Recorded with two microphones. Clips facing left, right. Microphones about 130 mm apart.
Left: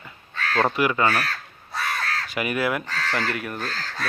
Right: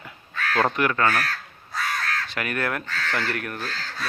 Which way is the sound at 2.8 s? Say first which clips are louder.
Left 1 dB; 35° left (ahead or behind).